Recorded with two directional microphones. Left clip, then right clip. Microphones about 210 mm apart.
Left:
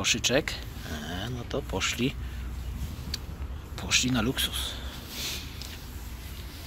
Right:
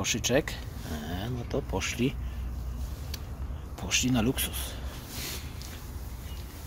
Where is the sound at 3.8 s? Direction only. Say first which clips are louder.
Left 2 dB; 15° right (ahead or behind).